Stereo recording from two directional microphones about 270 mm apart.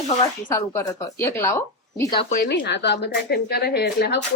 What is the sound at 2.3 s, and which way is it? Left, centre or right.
Speech, left.